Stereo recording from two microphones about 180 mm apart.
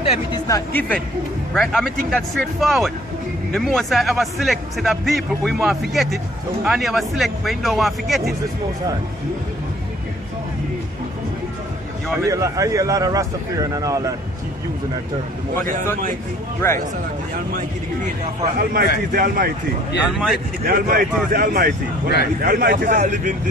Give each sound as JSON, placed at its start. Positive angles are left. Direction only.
{"t": 0.0, "sound": "speech", "side_deg": 30}
{"t": 0.5, "sound": "a man's voice", "side_deg": 15}
{"t": 12.3, "sound": "speech", "side_deg": -20}
{"t": 16.6, "sound": "speech", "side_deg": 10}
{"t": 17.6, "sound": "speech", "side_deg": -45}
{"t": 18.6, "sound": "speech", "side_deg": -60}
{"t": 20.6, "sound": "speech", "side_deg": -55}